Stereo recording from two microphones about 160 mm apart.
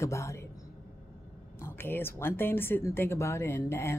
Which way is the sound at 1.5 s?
15° left (ahead or behind).